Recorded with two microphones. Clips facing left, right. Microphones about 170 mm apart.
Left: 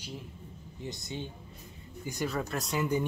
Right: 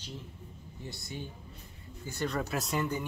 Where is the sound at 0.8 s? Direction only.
20° left (ahead or behind).